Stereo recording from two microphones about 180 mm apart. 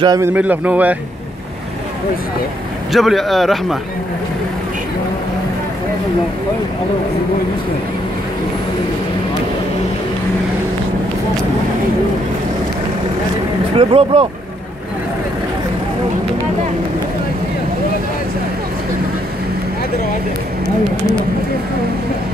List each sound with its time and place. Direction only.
0.0 s speech: 15° right (ahead or behind)
2.9 s speech: centre (ahead or behind)
13.7 s speech: 30° right (ahead or behind)